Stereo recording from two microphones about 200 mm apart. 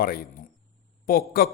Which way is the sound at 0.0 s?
45° left (ahead or behind).